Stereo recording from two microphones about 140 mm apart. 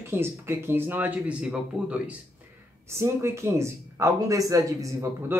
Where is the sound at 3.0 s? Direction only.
20° right (ahead or behind).